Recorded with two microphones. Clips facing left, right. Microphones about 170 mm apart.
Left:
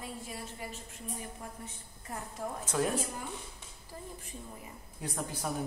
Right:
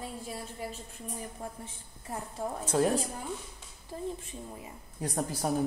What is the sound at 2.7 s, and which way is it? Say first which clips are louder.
Speech: right 5 dB; 30° right (ahead or behind).